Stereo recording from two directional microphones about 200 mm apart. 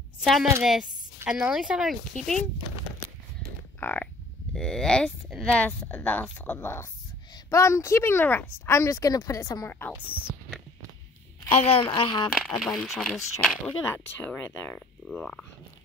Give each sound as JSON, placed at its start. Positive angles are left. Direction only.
{"t": 0.2, "sound": "a woman's voice", "side_deg": 0}
{"t": 3.8, "sound": "speech", "side_deg": 10}
{"t": 9.9, "sound": "speech", "side_deg": -5}
{"t": 11.8, "sound": "speech", "side_deg": 20}
{"t": 12.4, "sound": "speech", "side_deg": 0}